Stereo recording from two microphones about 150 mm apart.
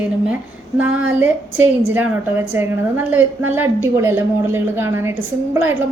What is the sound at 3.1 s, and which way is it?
A woman's voice, 10° right (ahead or behind).